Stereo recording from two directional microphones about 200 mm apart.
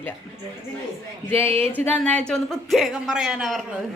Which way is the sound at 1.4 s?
30° right (ahead or behind).